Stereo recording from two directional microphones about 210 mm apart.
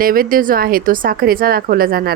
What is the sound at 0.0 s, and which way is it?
Speech, 45° right (ahead or behind).